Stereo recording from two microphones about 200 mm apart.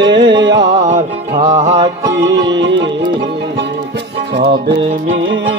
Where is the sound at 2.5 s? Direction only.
65° right (ahead or behind).